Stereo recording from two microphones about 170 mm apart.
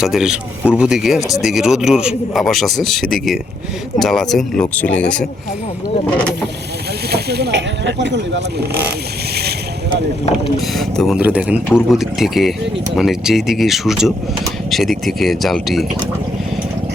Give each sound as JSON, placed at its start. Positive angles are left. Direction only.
{"t": 0.0, "sound": "speech", "side_deg": -5}
{"t": 6.1, "sound": "boat", "side_deg": 5}
{"t": 7.1, "sound": "speech", "side_deg": -75}
{"t": 9.3, "sound": "boat", "side_deg": -70}
{"t": 10.8, "sound": "speech", "side_deg": 0}